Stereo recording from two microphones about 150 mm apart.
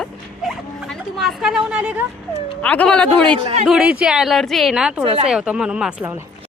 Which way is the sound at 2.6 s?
10° left (ahead or behind).